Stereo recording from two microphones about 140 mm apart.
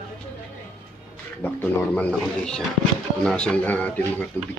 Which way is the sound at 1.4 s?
10° left (ahead or behind).